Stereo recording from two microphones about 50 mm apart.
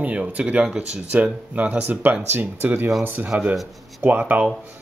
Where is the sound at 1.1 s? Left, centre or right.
Right.